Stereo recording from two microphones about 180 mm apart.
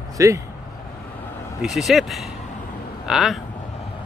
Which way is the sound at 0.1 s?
15° right (ahead or behind).